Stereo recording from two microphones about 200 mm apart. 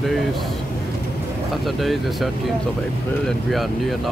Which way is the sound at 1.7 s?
Centre (ahead or behind).